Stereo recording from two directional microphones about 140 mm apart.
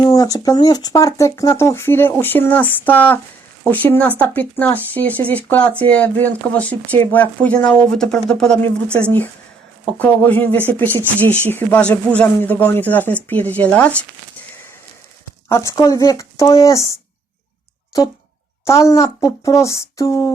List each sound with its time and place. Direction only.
0.0 s speech: 25° left (ahead or behind); by 14.0 s 10° left (ahead or behind)
15.4 s speech: 25° left (ahead or behind)
18.6 s speech: 20° left (ahead or behind)